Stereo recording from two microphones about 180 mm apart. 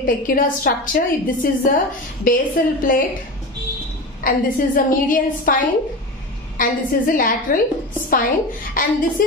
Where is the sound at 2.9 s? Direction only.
50° left (ahead or behind).